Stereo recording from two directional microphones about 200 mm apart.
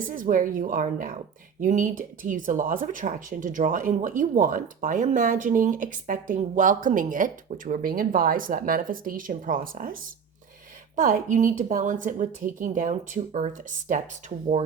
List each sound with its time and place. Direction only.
0.0 s a woman's voice: 40° right (ahead or behind)